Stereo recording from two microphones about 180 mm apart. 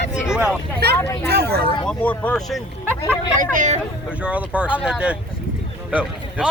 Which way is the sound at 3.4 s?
45° right (ahead or behind).